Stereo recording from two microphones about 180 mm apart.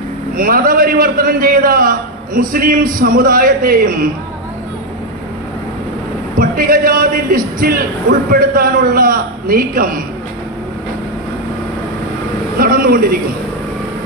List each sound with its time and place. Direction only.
0.4 s a man's voice: 55° right (ahead or behind)
6.3 s a man's voice: 50° right (ahead or behind)
12.5 s a sound: 55° right (ahead or behind)